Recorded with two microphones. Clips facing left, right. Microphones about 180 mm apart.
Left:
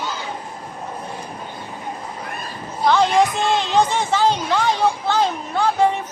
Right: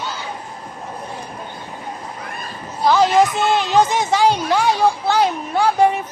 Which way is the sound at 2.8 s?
5° right (ahead or behind).